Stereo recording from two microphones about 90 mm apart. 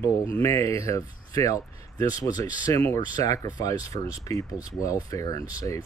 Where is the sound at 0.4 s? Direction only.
35° left (ahead or behind).